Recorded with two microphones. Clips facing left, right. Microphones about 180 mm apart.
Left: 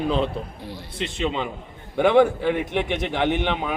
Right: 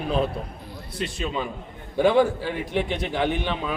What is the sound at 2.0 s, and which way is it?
Speech, 60° left (ahead or behind).